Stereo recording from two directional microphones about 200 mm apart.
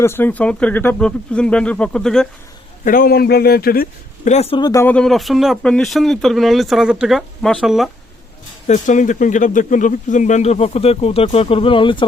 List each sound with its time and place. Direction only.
0.0 s a man's voice: 10° left (ahead or behind)
2.8 s a man's voice: 45° left (ahead or behind); by 7.9 s centre (ahead or behind)
8.6 s speech: 40° left (ahead or behind)